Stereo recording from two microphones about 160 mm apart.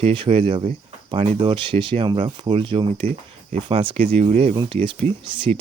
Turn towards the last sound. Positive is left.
turn(degrees=-35)  # may be behind; listen again after turning